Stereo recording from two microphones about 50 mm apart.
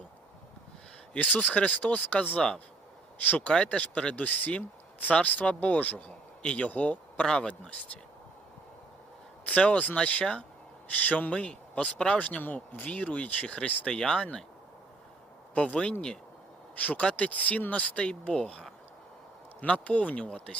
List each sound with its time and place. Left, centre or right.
1.1 s speech: left
3.5 s speech: left
7.3 s speech: centre
9.6 s speech: left
12.2 s speech: left
15.5 s speech: left
19.6 s speech: left